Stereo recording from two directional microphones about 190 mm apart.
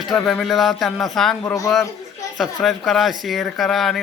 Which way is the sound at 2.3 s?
Centre (ahead or behind).